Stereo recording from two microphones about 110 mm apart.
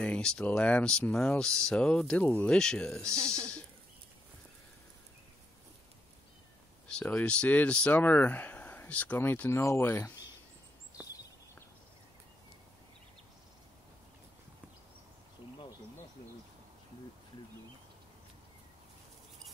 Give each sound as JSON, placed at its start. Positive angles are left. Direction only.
{"t": 0.0, "sound": "speech", "side_deg": 10}
{"t": 3.1, "sound": "speech", "side_deg": -30}
{"t": 6.9, "sound": "speech", "side_deg": 10}